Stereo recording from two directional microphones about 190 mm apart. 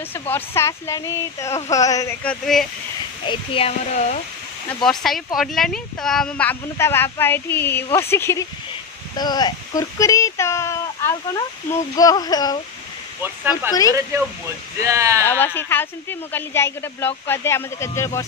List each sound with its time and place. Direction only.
0.1 s speech: 10° left (ahead or behind)
2.2 s speech: centre (ahead or behind)
3.3 s speech: 30° left (ahead or behind)
4.8 s speech: centre (ahead or behind); by 12.5 s 20° left (ahead or behind)
13.2 s speech: 10° right (ahead or behind)
14.8 s speech: 15° right (ahead or behind)
15.2 s speech: 10° left (ahead or behind)